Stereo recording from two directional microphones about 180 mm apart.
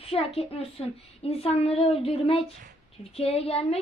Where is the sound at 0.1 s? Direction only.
35° left (ahead or behind).